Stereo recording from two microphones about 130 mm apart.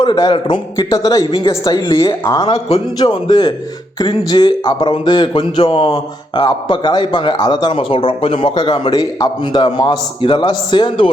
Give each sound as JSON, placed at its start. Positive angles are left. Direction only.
{"t": 0.0, "sound": "speech", "side_deg": 35}
{"t": 0.9, "sound": "a man's voice", "side_deg": 30}
{"t": 2.4, "sound": "speech", "side_deg": 55}
{"t": 3.0, "sound": "speech", "side_deg": 35}